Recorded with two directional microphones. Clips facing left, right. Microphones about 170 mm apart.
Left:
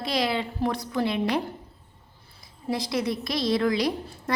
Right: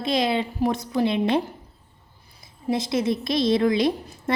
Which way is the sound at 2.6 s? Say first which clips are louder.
Right 4 dB; 25° right (ahead or behind).